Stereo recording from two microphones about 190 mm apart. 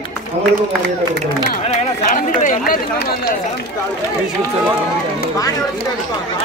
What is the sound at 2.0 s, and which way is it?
Speech, 45° left (ahead or behind).